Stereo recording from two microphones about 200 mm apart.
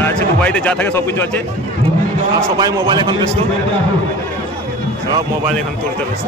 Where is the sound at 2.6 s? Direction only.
20° right (ahead or behind).